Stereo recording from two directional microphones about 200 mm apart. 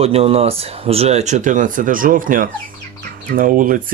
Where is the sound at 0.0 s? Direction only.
30° right (ahead or behind).